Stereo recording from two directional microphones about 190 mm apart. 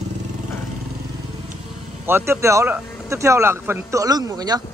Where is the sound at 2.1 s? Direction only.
15° right (ahead or behind).